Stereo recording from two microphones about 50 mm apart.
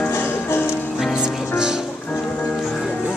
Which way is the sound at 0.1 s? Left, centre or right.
Left.